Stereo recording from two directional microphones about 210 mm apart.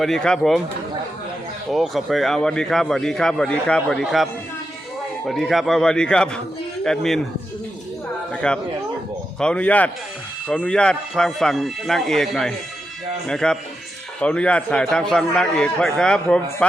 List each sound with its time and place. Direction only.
0.0 s a man's voice: 5° left (ahead or behind)
1.7 s a man's voice: centre (ahead or behind)
8.3 s chatter: 5° left (ahead or behind)
9.4 s a man's voice: 5° left (ahead or behind)